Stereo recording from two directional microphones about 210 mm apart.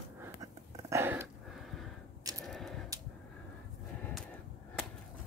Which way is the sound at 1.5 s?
Centre (ahead or behind).